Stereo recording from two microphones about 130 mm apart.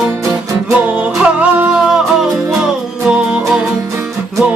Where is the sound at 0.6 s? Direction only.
10° right (ahead or behind).